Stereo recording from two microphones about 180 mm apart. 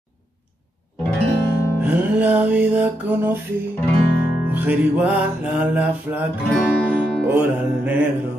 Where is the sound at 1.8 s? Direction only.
10° right (ahead or behind).